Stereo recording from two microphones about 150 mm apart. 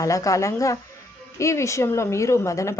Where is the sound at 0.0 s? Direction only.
20° left (ahead or behind).